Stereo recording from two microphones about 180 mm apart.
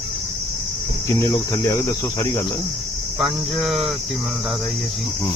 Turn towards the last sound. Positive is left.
turn(degrees=-5)  # may be behind; listen again after turning